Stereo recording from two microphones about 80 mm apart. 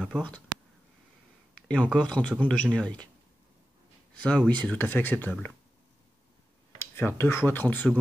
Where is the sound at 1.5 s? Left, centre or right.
Centre.